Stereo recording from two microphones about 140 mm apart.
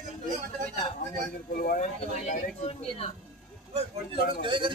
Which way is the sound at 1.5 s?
90° left.